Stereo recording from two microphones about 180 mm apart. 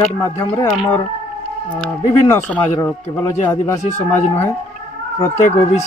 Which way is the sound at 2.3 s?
15° left (ahead or behind).